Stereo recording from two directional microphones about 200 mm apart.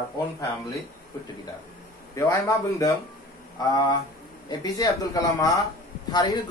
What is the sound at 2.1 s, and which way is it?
Speech, 15° left (ahead or behind).